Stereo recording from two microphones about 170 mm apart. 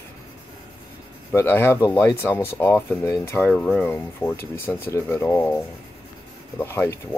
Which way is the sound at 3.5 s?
5° left (ahead or behind).